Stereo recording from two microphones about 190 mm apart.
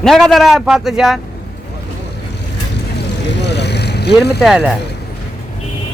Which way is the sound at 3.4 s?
65° left (ahead or behind).